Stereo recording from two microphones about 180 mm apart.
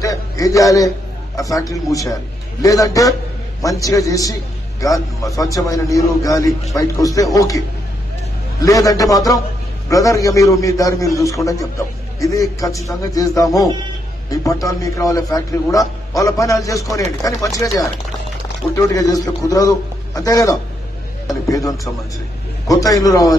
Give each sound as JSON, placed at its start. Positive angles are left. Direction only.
{"t": 0.0, "sound": "a man's voice", "side_deg": 20}
{"t": 18.8, "sound": "a man's voice", "side_deg": 20}